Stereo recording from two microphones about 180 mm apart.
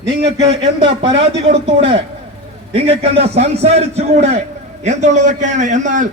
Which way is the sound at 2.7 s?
35° right (ahead or behind).